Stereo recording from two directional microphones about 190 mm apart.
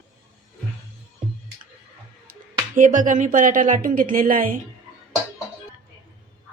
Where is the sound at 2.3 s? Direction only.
45° right (ahead or behind).